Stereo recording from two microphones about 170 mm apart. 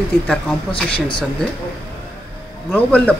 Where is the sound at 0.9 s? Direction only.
30° left (ahead or behind).